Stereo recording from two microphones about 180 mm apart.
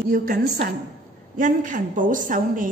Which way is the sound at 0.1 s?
55° right (ahead or behind).